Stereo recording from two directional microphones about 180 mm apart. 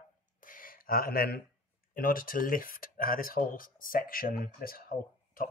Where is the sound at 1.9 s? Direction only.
55° left (ahead or behind).